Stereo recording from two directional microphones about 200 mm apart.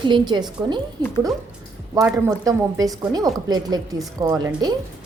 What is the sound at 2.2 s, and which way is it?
A woman's voice, 15° right (ahead or behind).